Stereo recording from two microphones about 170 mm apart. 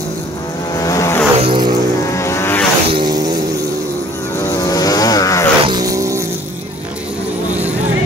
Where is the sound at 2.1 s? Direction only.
15° left (ahead or behind).